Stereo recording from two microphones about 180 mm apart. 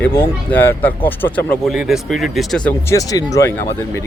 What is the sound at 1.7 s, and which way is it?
Speech, 5° right (ahead or behind).